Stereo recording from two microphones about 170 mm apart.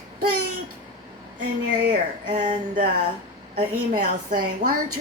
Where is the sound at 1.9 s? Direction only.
50° right (ahead or behind).